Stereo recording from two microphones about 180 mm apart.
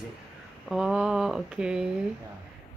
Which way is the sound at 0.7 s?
5° right (ahead or behind).